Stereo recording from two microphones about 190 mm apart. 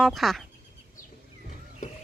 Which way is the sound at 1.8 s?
40° left (ahead or behind).